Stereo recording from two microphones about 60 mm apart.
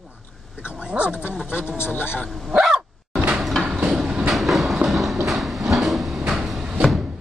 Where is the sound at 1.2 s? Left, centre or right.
Left.